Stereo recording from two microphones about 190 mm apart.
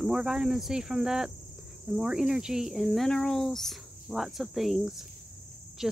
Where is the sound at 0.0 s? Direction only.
5° right (ahead or behind).